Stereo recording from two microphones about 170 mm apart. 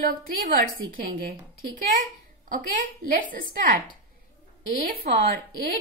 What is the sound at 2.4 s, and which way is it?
A woman's voice, 50° right (ahead or behind).